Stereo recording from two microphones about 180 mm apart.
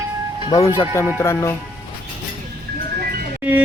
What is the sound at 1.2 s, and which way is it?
Speech, 15° left (ahead or behind).